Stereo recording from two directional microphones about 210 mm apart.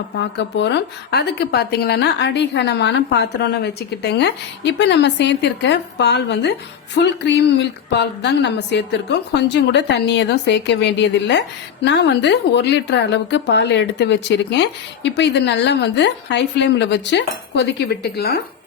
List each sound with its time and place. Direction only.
0.2 s speech: 55° left (ahead or behind)